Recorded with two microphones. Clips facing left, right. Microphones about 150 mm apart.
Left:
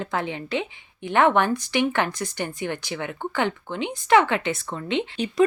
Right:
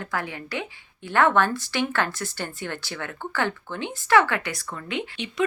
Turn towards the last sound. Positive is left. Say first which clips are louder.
# left 5 dB
turn(degrees=25)  # may be behind; listen again after turning